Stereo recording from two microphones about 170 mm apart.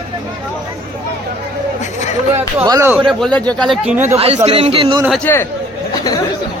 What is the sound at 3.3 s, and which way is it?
Speech, 5° left (ahead or behind).